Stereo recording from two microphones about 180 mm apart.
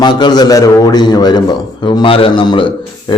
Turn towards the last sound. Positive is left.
turn(degrees=25)  # may be behind; listen again after turning